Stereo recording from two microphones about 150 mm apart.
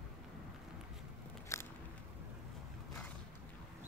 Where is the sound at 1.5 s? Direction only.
20° left (ahead or behind).